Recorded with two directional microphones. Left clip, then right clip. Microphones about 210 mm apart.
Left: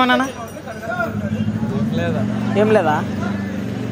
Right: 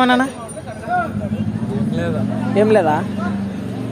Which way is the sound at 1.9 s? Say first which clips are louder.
Even; 60° right (ahead or behind).